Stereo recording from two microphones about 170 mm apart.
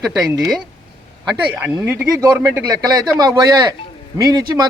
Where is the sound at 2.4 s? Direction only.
20° right (ahead or behind).